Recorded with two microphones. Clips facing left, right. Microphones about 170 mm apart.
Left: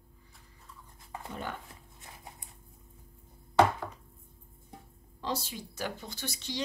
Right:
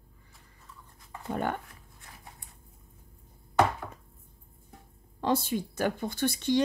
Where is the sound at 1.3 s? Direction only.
55° right (ahead or behind).